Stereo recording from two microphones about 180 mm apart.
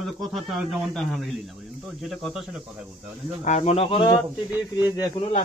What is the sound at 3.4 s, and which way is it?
A man's voice, 35° left (ahead or behind).